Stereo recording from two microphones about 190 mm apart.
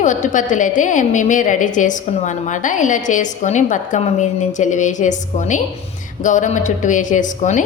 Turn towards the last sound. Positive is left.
turn(degrees=40)  # may be behind; listen again after turning